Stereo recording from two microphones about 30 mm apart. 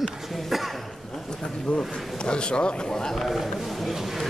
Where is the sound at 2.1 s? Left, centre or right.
Left.